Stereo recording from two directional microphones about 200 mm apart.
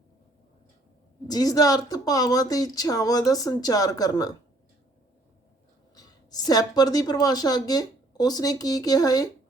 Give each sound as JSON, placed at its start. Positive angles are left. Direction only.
{"t": 1.3, "sound": "speech", "side_deg": 20}
{"t": 5.9, "sound": "speech", "side_deg": 20}